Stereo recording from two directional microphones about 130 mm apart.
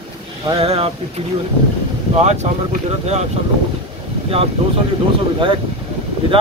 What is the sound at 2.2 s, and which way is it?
Speech, 60° right (ahead or behind).